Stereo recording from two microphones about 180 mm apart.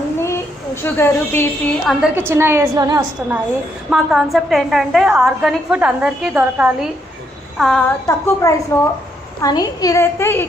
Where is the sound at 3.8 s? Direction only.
Centre (ahead or behind).